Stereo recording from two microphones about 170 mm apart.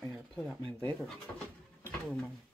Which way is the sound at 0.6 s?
25° right (ahead or behind).